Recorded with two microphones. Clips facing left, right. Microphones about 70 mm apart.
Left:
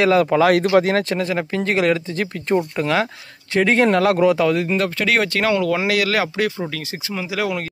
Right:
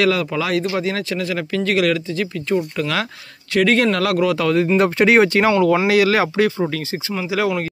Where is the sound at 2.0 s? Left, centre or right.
Left.